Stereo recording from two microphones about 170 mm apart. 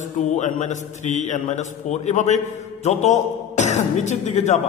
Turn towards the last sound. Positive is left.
turn(degrees=45)  # may be behind; listen again after turning